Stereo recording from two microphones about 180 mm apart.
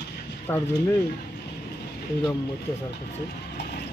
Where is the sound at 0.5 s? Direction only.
15° left (ahead or behind).